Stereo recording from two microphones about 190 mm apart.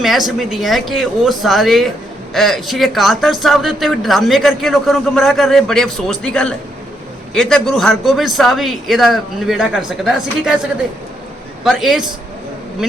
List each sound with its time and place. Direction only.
0.0 s speech: centre (ahead or behind)
11.6 s speech: centre (ahead or behind)